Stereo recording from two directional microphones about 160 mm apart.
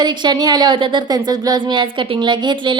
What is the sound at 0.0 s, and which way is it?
Speech, 25° right (ahead or behind).